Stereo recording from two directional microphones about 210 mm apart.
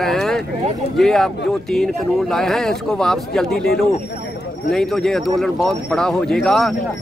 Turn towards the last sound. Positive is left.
turn(degrees=0)  # may be behind; listen again after turning